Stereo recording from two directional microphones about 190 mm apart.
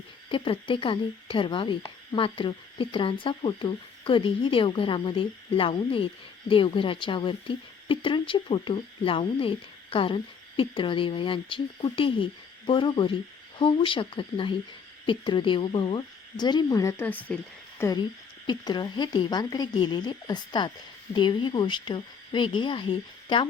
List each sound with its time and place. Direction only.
0.3 s a woman's voice: 25° left (ahead or behind)